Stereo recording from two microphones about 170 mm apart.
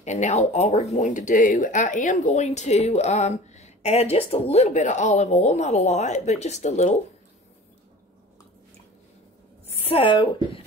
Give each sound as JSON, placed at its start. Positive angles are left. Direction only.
{"t": 0.0, "sound": "speech", "side_deg": 45}
{"t": 9.8, "sound": "speech", "side_deg": 30}